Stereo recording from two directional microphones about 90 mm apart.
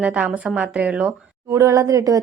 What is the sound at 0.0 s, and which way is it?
Speech, 15° right (ahead or behind).